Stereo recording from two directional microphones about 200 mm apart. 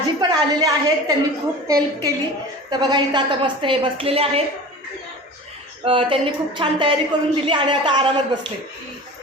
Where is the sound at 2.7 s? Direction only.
20° right (ahead or behind).